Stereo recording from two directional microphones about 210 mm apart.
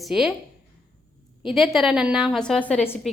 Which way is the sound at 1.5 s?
Centre (ahead or behind).